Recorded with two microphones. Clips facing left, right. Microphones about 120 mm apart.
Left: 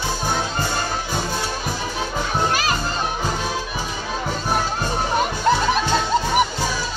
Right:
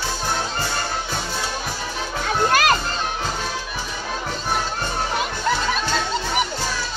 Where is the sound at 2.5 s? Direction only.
60° right (ahead or behind).